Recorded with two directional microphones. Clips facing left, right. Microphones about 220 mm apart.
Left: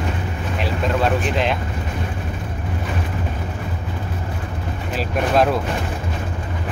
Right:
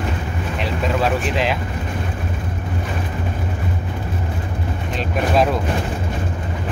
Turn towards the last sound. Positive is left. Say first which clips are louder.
# even
turn(degrees=0)  # may be behind; listen again after turning